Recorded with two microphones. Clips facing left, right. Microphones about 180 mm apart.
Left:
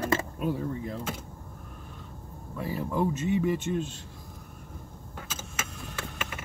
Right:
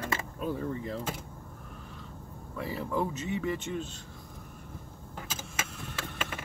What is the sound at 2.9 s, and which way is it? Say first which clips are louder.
Speech: left 5 dB; 15° left (ahead or behind).